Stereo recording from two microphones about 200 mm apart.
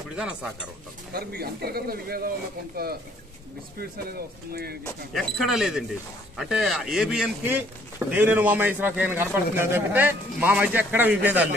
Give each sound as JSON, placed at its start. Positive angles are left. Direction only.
{"t": 0.1, "sound": "a man's voice", "side_deg": -5}
{"t": 1.1, "sound": "speech", "side_deg": -50}
{"t": 4.5, "sound": "speech", "side_deg": -50}
{"t": 5.1, "sound": "a man's voice", "side_deg": 0}